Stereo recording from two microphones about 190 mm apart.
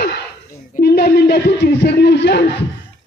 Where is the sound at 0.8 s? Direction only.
55° left (ahead or behind).